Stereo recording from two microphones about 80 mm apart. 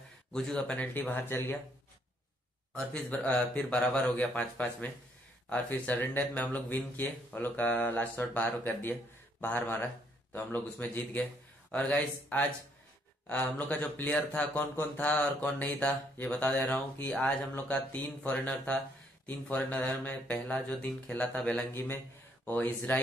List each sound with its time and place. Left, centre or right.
0.3 s mantra: centre; by 1.6 s left
2.9 s speech: centre
5.5 s mantra: left